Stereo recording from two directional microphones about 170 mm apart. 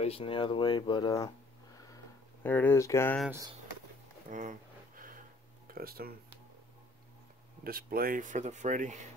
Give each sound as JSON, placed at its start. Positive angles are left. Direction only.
{"t": 0.0, "sound": "speech", "side_deg": 35}
{"t": 2.4, "sound": "speech", "side_deg": 10}
{"t": 3.3, "sound": "speech", "side_deg": -20}
{"t": 4.3, "sound": "a sound", "side_deg": -50}
{"t": 5.7, "sound": "speech", "side_deg": -60}
{"t": 7.6, "sound": "speech", "side_deg": -60}